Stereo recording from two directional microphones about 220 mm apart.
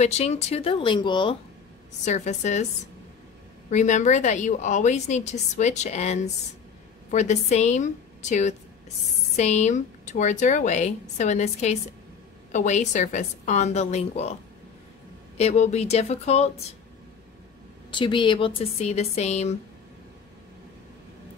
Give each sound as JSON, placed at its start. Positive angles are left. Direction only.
{"t": 0.0, "sound": "speech", "side_deg": 30}
{"t": 2.0, "sound": "a woman's voice", "side_deg": 30}
{"t": 3.7, "sound": "a woman's voice", "side_deg": 35}
{"t": 15.3, "sound": "speech", "side_deg": 30}
{"t": 17.9, "sound": "speech", "side_deg": 20}